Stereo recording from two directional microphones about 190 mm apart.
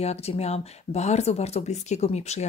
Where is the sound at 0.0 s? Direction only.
35° left (ahead or behind).